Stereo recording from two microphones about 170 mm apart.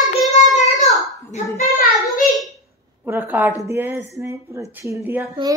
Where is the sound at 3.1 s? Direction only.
10° right (ahead or behind).